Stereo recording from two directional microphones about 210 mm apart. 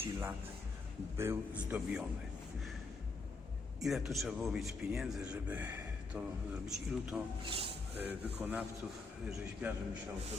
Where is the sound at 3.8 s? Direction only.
Centre (ahead or behind).